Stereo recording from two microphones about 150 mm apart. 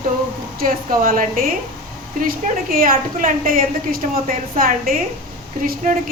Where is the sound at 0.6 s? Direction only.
70° right (ahead or behind).